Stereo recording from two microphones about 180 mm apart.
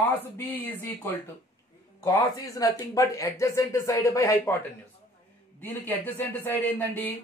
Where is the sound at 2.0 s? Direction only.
20° left (ahead or behind).